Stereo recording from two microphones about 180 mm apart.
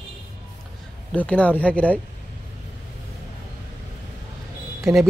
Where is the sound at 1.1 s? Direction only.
10° left (ahead or behind).